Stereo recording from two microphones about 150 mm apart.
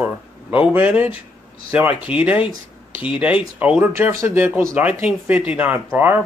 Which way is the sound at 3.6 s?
10° right (ahead or behind).